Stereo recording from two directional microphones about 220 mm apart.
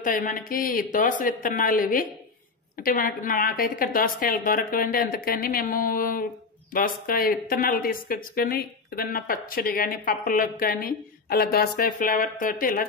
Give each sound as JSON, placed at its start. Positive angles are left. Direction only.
{"t": 0.0, "sound": "a woman's voice", "side_deg": 35}